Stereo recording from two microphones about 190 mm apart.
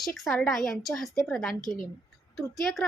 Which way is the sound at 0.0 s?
Centre (ahead or behind).